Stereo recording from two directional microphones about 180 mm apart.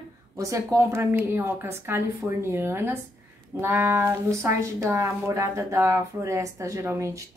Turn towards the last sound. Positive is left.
turn(degrees=-15)  # may be behind; listen again after turning